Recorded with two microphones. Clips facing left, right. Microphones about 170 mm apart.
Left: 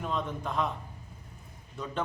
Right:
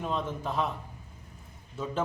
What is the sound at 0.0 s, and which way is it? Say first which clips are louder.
Speech: right 1 dB; centre (ahead or behind).